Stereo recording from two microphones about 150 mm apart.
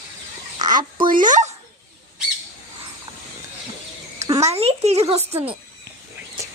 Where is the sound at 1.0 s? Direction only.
60° right (ahead or behind).